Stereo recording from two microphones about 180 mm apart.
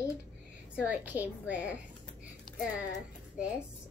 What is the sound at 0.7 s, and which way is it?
A woman's voice, 10° right (ahead or behind).